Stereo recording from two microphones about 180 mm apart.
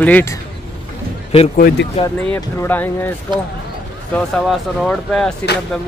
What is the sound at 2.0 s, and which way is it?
Speech, 35° left (ahead or behind).